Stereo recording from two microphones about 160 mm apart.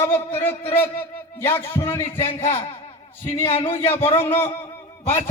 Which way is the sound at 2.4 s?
40° left (ahead or behind).